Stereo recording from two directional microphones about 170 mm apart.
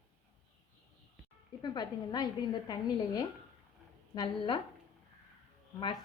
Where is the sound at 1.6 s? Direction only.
25° left (ahead or behind).